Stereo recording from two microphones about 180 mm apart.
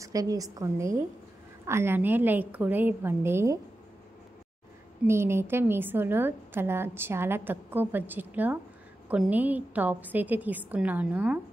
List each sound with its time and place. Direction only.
0.0 s a woman's voice: 20° right (ahead or behind)
5.0 s a woman's voice: 15° right (ahead or behind)